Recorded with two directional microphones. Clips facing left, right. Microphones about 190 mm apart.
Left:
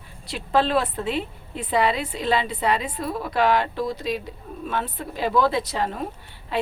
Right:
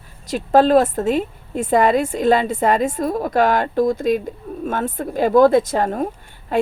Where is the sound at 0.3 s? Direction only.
45° right (ahead or behind).